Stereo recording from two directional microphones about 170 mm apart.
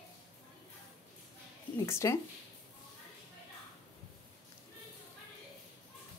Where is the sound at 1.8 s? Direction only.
15° left (ahead or behind).